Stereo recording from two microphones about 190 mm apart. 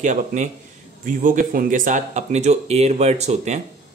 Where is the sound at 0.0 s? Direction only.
40° right (ahead or behind).